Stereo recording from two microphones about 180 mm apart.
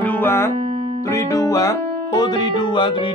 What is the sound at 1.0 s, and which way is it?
Speech, 15° left (ahead or behind).